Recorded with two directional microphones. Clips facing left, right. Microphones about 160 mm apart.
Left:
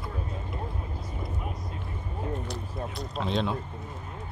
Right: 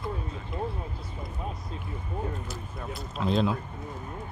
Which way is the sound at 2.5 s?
Centre (ahead or behind).